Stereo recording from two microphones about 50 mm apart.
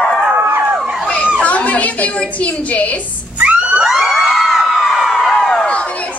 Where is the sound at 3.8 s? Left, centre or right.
Centre.